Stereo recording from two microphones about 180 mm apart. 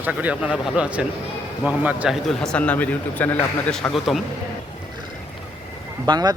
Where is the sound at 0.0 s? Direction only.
10° right (ahead or behind).